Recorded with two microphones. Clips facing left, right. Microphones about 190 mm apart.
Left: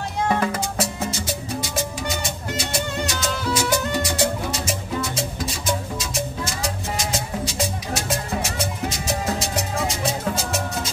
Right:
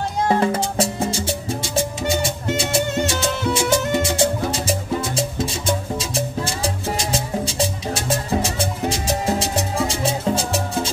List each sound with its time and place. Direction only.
0.3 s music: 30° right (ahead or behind)